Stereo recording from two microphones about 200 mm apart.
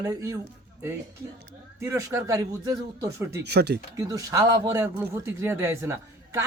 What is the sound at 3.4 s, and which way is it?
Speech, 55° right (ahead or behind).